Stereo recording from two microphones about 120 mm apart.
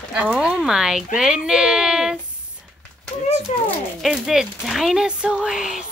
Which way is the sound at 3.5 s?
60° left (ahead or behind).